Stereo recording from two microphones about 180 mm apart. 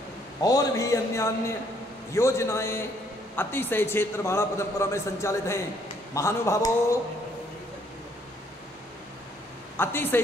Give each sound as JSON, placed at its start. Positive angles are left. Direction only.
{"t": 0.4, "sound": "a man's voice", "side_deg": 20}
{"t": 9.8, "sound": "a man's voice", "side_deg": 10}